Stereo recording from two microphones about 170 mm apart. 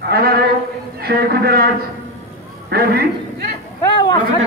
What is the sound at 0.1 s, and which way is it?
A man's voice, 65° right (ahead or behind).